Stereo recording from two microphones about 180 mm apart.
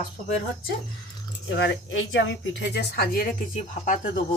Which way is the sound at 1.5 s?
85° left.